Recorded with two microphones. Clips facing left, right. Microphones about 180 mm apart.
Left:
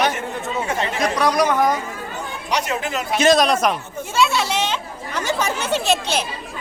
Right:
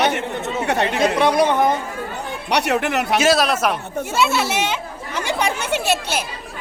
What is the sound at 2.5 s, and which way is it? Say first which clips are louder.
Speech: right 4 dB; 65° right (ahead or behind).